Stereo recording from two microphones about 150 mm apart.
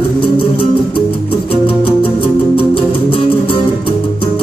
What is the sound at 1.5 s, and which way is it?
Music, 40° left (ahead or behind).